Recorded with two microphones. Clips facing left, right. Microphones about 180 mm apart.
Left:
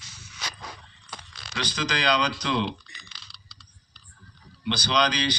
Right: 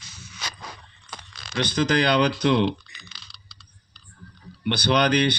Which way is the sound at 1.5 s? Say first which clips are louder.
Right 8 dB; 55° right (ahead or behind).